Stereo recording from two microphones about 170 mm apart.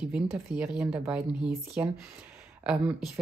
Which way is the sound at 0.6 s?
5° right (ahead or behind).